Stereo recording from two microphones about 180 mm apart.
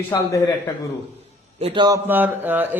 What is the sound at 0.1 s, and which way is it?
Speech, 15° left (ahead or behind).